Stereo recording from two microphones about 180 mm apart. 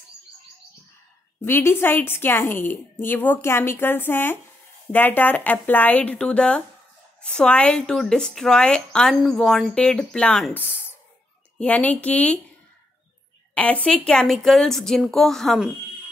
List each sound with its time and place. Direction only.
1.4 s a woman's voice: 15° left (ahead or behind)
13.6 s speech: 10° left (ahead or behind)